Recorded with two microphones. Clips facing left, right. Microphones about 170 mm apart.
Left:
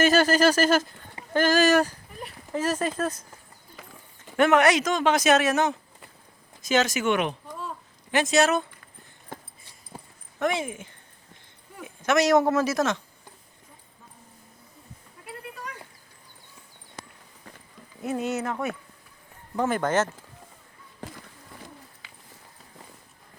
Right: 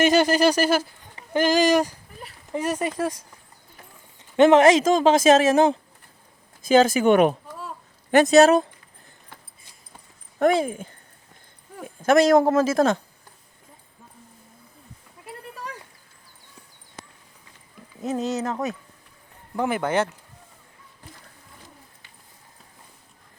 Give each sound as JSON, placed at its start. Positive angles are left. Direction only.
{"t": 0.0, "sound": "speech", "side_deg": -15}
{"t": 3.8, "sound": "a sound", "side_deg": 90}
{"t": 4.4, "sound": "a man's voice", "side_deg": -25}
{"t": 10.3, "sound": "a man's voice", "side_deg": -35}
{"t": 18.2, "sound": "speech", "side_deg": -35}
{"t": 19.5, "sound": "speech", "side_deg": -10}
{"t": 22.0, "sound": "a sound", "side_deg": 90}